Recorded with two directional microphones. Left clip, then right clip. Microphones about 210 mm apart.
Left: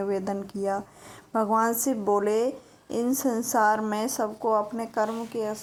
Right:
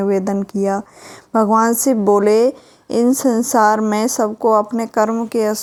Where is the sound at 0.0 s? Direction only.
45° right (ahead or behind).